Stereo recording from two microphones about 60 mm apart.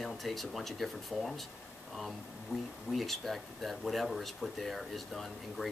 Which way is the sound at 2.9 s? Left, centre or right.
Centre.